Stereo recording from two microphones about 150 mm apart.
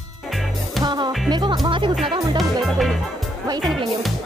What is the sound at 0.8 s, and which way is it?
Music, 30° right (ahead or behind).